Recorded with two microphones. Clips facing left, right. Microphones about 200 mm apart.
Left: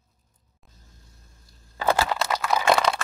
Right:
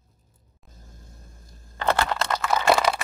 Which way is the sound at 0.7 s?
50° right (ahead or behind).